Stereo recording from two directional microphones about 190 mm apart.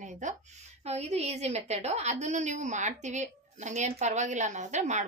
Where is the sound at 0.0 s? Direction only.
40° right (ahead or behind).